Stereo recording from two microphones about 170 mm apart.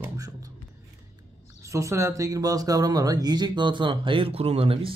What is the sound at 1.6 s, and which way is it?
Speech, 15° right (ahead or behind).